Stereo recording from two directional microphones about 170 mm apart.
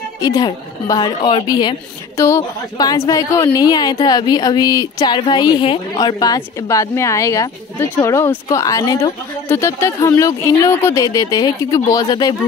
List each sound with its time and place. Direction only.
0.2 s a woman's voice: 20° left (ahead or behind)